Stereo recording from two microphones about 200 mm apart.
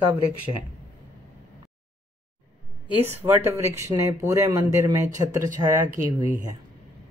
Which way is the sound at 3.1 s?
10° right (ahead or behind).